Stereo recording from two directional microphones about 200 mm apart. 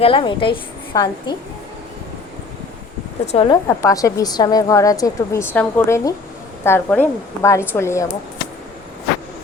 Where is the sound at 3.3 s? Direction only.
30° left (ahead or behind).